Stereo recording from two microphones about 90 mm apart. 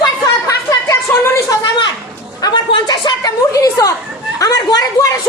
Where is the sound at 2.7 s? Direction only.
60° left (ahead or behind); by 5.1 s 45° left (ahead or behind).